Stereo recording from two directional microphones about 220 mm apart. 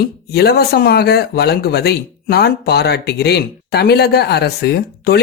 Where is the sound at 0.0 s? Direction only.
45° left (ahead or behind).